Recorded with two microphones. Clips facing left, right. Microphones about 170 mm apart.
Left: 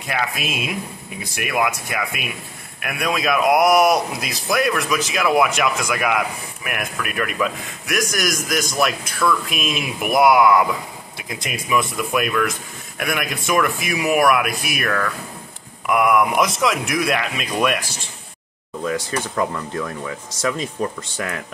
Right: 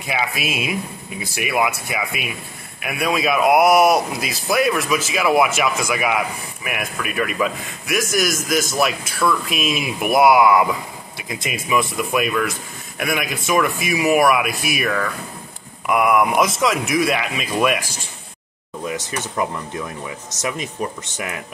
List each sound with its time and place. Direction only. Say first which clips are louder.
0.0 s a man's voice: right 1 dB; 5° right (ahead or behind)
18.9 s speech: left 3 dB; 20° right (ahead or behind)